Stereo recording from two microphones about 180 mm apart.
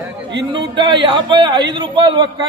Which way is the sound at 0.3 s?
75° right (ahead or behind).